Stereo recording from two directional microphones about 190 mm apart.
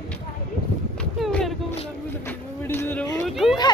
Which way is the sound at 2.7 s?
10° left (ahead or behind).